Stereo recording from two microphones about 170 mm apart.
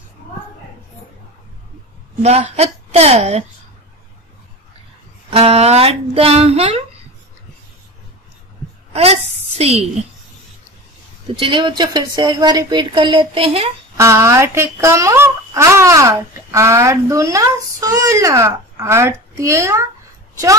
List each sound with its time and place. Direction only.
2.2 s speech: 40° right (ahead or behind)
5.3 s speech: 40° right (ahead or behind)
8.9 s a woman's voice: 35° right (ahead or behind)
11.3 s speech: 30° right (ahead or behind)
13.9 s speech: 15° right (ahead or behind)